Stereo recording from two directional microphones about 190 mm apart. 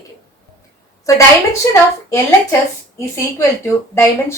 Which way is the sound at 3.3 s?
15° left (ahead or behind).